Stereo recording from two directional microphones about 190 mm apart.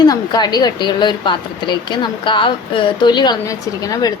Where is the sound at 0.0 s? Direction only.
20° left (ahead or behind).